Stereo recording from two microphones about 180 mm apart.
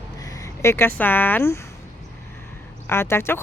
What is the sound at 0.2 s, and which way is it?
Speech, 20° left (ahead or behind).